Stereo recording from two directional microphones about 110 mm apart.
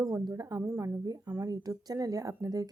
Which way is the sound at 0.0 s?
35° right (ahead or behind).